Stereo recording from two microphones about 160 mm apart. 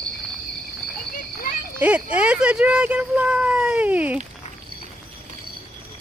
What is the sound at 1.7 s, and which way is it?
Speech, 10° right (ahead or behind).